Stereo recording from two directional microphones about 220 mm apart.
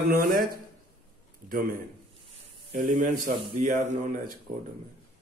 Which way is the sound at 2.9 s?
35° right (ahead or behind).